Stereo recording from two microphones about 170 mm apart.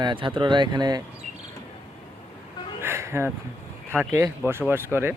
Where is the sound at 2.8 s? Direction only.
15° right (ahead or behind).